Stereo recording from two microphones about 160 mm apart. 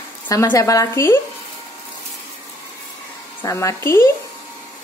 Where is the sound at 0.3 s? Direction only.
20° left (ahead or behind).